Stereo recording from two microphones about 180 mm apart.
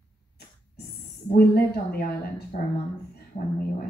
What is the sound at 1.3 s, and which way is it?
A woman's voice, 60° left (ahead or behind).